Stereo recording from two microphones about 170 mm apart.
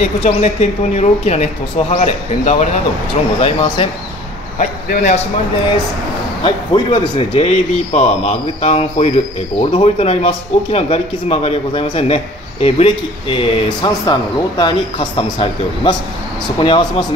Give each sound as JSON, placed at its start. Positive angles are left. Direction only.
{"t": 0.2, "sound": "speech", "side_deg": 40}
{"t": 4.6, "sound": "a man's voice", "side_deg": 50}
{"t": 6.4, "sound": "speech", "side_deg": 30}